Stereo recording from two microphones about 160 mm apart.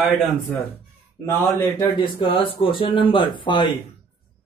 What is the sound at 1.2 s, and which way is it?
Speech, 15° left (ahead or behind).